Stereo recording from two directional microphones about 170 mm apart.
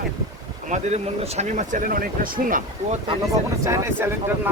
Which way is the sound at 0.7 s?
40° right (ahead or behind).